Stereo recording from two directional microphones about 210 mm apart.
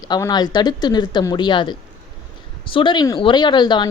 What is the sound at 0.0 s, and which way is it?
A woman's voice, 20° left (ahead or behind).